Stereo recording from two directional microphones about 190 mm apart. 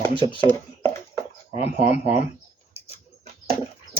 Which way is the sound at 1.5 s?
35° left (ahead or behind).